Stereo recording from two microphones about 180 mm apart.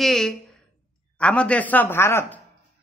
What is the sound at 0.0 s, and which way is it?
A woman's voice, centre (ahead or behind).